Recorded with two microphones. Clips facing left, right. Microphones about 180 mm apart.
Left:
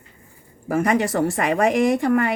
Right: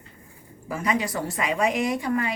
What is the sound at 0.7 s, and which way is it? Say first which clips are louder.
A woman's voice: left 7 dB; 55° left (ahead or behind).